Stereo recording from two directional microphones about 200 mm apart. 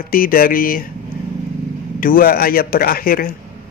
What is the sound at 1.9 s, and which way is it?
Speech, 45° left (ahead or behind).